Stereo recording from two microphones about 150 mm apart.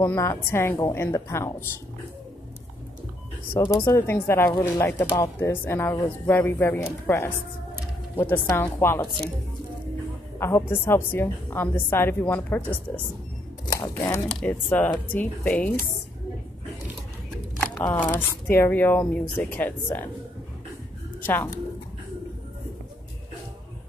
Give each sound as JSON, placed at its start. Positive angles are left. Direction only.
{"t": 0.0, "sound": "speech", "side_deg": 15}
{"t": 3.6, "sound": "speech", "side_deg": 20}
{"t": 8.5, "sound": "speech", "side_deg": 15}
{"t": 10.7, "sound": "speech", "side_deg": 15}
{"t": 13.7, "sound": "speech", "side_deg": 20}
{"t": 14.2, "sound": "speech", "side_deg": 5}
{"t": 17.8, "sound": "speech", "side_deg": 10}
{"t": 21.2, "sound": "speech", "side_deg": 15}